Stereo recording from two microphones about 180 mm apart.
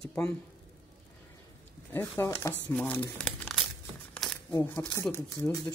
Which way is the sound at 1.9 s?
15° left (ahead or behind).